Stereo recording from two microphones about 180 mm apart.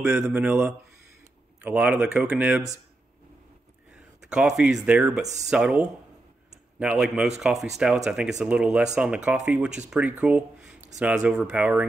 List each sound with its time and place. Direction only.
0.2 s speech: 5° right (ahead or behind)
4.3 s speech: 5° right (ahead or behind)
5.2 s speech: 40° right (ahead or behind)
5.5 s speech: 5° right (ahead or behind)